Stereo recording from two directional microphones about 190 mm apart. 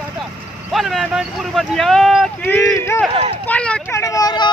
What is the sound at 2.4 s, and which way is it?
Speech, 15° left (ahead or behind).